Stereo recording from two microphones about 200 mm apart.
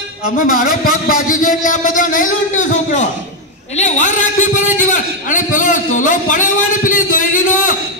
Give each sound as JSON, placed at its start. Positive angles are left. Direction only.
{"t": 0.5, "sound": "a man's voice", "side_deg": 45}